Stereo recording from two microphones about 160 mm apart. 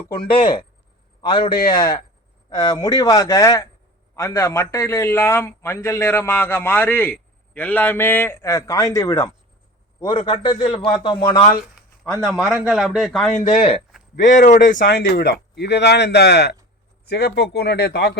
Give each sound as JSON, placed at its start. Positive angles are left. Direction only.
{"t": 0.2, "sound": "a man's voice", "side_deg": 30}
{"t": 12.2, "sound": "speech", "side_deg": 0}
{"t": 13.9, "sound": "a sound", "side_deg": -5}
{"t": 14.3, "sound": "speech", "side_deg": 50}
{"t": 14.8, "sound": "speech", "side_deg": 90}